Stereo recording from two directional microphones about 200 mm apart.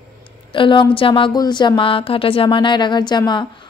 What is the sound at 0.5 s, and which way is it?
Speech, 25° left (ahead or behind).